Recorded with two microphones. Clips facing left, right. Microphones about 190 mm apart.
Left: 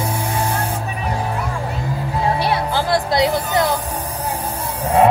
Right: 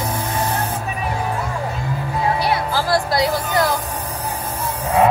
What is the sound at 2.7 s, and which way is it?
Music, 20° left (ahead or behind).